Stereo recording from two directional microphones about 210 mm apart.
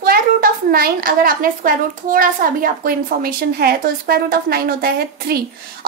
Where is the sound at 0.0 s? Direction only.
45° right (ahead or behind).